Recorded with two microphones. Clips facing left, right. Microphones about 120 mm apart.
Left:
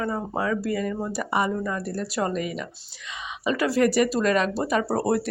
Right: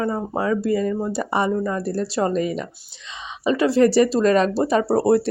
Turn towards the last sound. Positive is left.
turn(degrees=-30)  # may be behind; listen again after turning